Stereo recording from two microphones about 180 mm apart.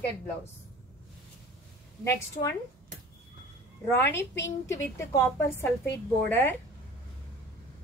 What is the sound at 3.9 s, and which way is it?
A woman's voice, 10° left (ahead or behind).